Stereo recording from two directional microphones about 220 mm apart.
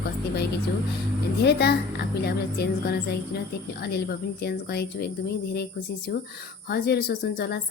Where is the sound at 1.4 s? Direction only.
45° left (ahead or behind).